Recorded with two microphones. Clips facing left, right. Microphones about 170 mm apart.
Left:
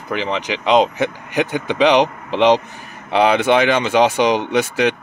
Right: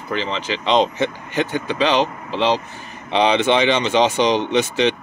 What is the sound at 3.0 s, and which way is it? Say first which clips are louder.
Speech: left 2 dB; 5° left (ahead or behind).